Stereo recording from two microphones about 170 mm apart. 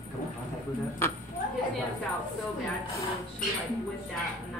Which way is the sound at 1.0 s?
15° left (ahead or behind).